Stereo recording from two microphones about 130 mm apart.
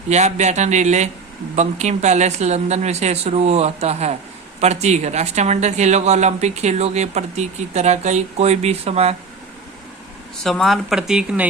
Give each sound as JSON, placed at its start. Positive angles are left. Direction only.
{"t": 0.1, "sound": "a woman's voice", "side_deg": -60}
{"t": 10.4, "sound": "speech", "side_deg": 0}